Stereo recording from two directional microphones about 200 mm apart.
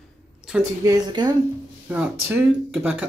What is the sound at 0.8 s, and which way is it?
Speech, 20° right (ahead or behind).